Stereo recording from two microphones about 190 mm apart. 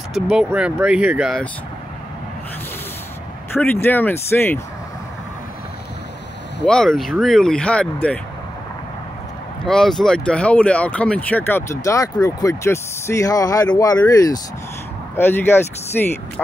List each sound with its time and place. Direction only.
0.1 s speech: 5° right (ahead or behind)
3.5 s speech: 10° left (ahead or behind)
6.6 s speech: 5° left (ahead or behind)
9.7 s speech: centre (ahead or behind)